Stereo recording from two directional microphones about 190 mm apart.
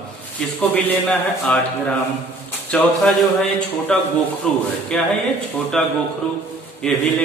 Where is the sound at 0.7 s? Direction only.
10° left (ahead or behind).